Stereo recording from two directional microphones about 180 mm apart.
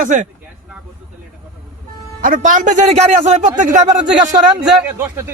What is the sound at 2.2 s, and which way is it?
Speech, 45° right (ahead or behind).